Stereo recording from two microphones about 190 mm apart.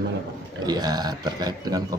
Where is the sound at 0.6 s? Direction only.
20° right (ahead or behind).